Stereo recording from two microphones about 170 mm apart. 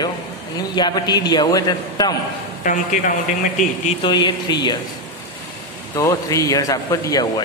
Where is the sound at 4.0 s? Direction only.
25° left (ahead or behind).